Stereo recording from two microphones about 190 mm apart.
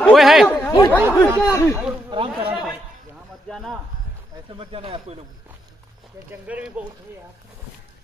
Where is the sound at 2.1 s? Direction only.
25° right (ahead or behind).